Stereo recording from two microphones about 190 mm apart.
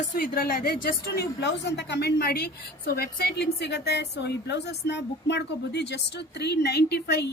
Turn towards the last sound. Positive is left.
turn(degrees=60)  # may be behind; listen again after turning